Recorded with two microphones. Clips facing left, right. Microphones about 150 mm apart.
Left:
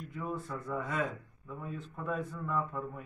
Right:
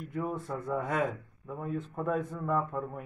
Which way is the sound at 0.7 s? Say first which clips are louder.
Right 4 dB; 60° right (ahead or behind).